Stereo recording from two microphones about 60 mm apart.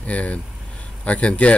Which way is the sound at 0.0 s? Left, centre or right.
Left.